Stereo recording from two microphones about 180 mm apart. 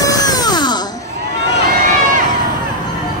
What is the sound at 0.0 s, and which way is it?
Music, 20° left (ahead or behind).